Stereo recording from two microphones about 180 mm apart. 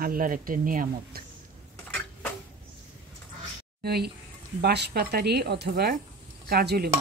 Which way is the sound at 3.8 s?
65° right (ahead or behind).